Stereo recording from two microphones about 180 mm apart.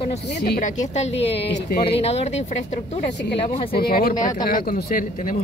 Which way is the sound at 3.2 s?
70° left (ahead or behind).